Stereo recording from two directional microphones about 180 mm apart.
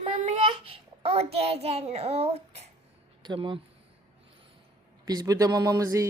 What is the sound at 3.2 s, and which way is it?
Speech, 25° right (ahead or behind).